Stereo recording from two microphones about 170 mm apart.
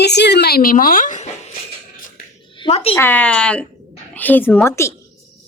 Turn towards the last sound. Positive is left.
turn(degrees=15)  # may be behind; listen again after turning